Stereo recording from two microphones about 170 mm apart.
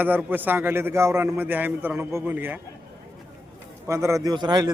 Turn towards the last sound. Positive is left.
turn(degrees=-25)  # may be behind; listen again after turning